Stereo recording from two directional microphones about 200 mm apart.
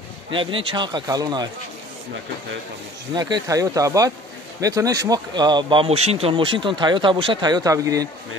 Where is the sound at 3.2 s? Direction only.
20° right (ahead or behind).